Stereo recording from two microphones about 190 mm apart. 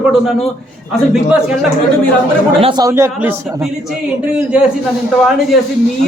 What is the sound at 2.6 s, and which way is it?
Speech, 30° right (ahead or behind).